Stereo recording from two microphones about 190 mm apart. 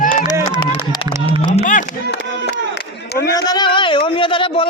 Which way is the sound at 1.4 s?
40° left (ahead or behind).